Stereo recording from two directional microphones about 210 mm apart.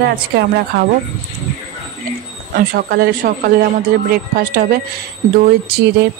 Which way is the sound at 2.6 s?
45° right (ahead or behind).